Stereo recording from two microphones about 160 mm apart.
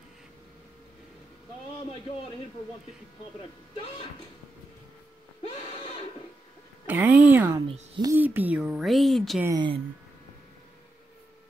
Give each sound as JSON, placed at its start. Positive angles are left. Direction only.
{"t": 6.9, "sound": "speech", "side_deg": -10}
{"t": 7.6, "sound": "speech", "side_deg": -35}
{"t": 8.1, "sound": "speech", "side_deg": -15}
{"t": 9.4, "sound": "a woman's voice", "side_deg": -25}